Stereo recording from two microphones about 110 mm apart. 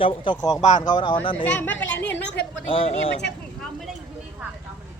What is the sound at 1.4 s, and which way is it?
Speech, 15° left (ahead or behind).